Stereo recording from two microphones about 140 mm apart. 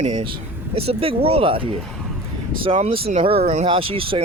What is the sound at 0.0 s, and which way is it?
Speech, 50° right (ahead or behind).